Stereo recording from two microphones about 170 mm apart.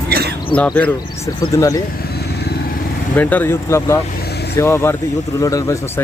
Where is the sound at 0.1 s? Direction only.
70° right (ahead or behind).